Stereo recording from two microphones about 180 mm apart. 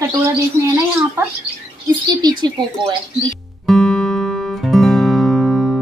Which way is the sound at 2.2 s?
25° right (ahead or behind).